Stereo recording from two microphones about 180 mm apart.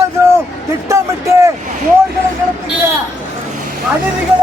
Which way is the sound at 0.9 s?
15° right (ahead or behind).